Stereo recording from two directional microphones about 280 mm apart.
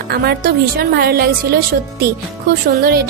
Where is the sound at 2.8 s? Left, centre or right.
Right.